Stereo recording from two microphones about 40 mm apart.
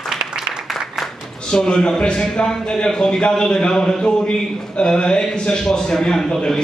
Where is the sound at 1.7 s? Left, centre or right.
Left.